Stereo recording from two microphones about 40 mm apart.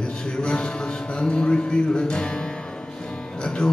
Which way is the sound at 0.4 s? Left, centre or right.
Left.